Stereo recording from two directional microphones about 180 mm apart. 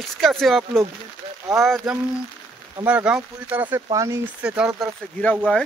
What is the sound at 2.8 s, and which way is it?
Speech, 10° right (ahead or behind).